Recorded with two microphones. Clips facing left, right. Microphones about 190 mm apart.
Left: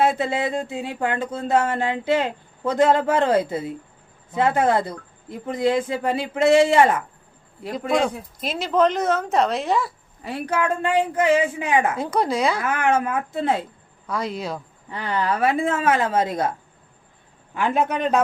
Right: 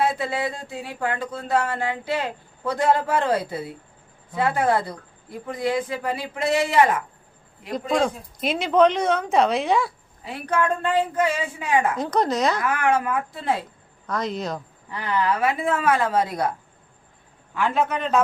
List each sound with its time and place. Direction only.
0.0 s speech: 25° left (ahead or behind)
7.9 s a woman's voice: 5° left (ahead or behind)
12.6 s speech: 20° left (ahead or behind)
14.1 s a woman's voice: 10° left (ahead or behind)
14.8 s speech: 30° left (ahead or behind)
17.5 s a woman's voice: 15° left (ahead or behind)